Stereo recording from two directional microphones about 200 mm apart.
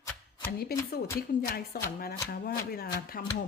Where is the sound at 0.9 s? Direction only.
50° left (ahead or behind).